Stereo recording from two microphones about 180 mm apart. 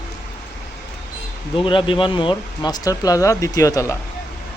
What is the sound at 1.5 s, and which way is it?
Speech, 30° left (ahead or behind).